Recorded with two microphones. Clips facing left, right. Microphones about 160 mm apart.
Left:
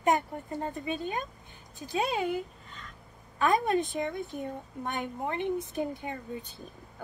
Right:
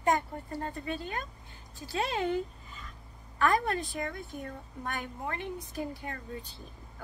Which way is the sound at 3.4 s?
20° left (ahead or behind).